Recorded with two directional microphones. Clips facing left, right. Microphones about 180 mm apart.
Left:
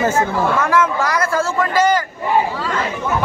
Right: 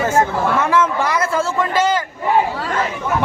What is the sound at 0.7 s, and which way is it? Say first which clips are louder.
A man's voice: even; 25° right (ahead or behind).